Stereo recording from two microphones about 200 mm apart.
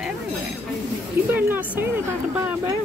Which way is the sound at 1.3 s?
10° right (ahead or behind).